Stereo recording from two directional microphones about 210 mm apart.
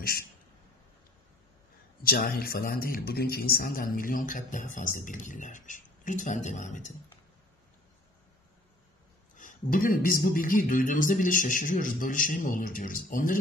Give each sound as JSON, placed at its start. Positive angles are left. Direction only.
{"t": 2.0, "sound": "a man's voice", "side_deg": 45}
{"t": 9.4, "sound": "a man's voice", "side_deg": 40}